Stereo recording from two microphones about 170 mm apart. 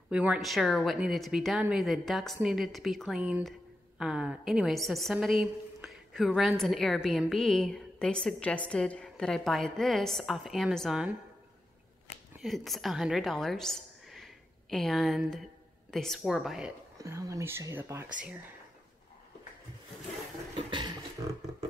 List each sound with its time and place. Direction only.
0.1 s a woman's voice: 5° right (ahead or behind)
12.4 s a woman's voice: centre (ahead or behind)
17.0 s speech: 20° right (ahead or behind)
20.5 s a sound: 25° right (ahead or behind)